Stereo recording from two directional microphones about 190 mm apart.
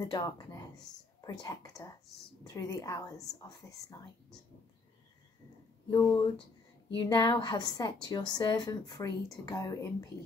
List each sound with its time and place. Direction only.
0.0 s a woman's voice: 20° left (ahead or behind)
5.9 s a woman's voice: 20° left (ahead or behind)